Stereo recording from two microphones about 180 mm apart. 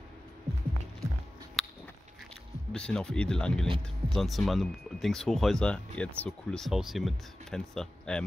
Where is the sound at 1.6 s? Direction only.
Centre (ahead or behind).